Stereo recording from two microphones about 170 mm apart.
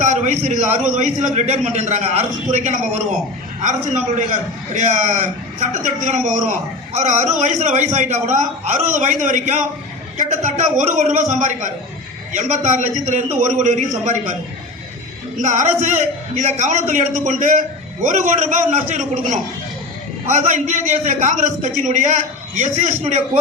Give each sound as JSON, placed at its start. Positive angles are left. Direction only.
{"t": 0.0, "sound": "a man's voice", "side_deg": -45}
{"t": 15.4, "sound": "a man's voice", "side_deg": -45}